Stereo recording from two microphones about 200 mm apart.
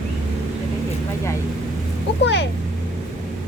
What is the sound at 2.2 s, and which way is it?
Speech, 60° left (ahead or behind).